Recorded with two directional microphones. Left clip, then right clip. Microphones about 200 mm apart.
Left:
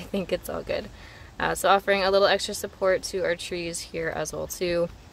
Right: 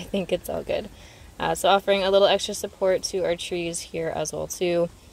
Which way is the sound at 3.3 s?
30° left (ahead or behind).